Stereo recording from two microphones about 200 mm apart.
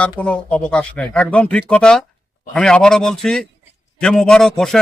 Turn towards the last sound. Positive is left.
turn(degrees=0)  # may be behind; listen again after turning